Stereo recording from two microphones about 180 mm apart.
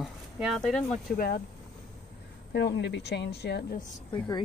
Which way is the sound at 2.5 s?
70° left (ahead or behind).